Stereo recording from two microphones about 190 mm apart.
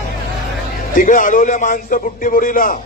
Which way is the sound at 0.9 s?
45° left (ahead or behind).